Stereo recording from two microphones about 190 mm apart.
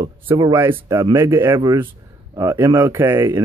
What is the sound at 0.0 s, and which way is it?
Speech, 20° right (ahead or behind).